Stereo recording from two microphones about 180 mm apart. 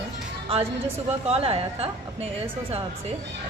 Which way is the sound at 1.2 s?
35° right (ahead or behind).